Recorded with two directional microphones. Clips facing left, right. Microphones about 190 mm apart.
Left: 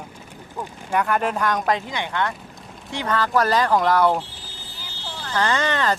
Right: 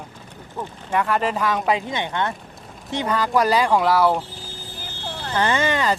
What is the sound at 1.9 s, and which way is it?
Speech, 20° right (ahead or behind).